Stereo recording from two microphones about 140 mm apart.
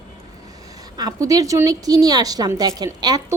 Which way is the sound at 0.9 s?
25° right (ahead or behind).